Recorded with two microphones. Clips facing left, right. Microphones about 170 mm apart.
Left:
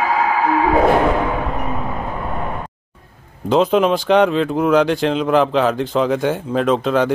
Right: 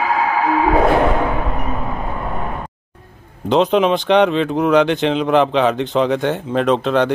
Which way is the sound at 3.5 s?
Centre (ahead or behind).